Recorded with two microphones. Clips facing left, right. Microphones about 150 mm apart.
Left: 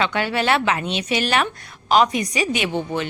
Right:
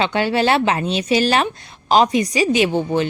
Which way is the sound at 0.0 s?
30° right (ahead or behind).